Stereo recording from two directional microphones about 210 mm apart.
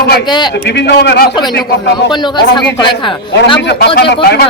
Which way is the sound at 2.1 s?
20° left (ahead or behind).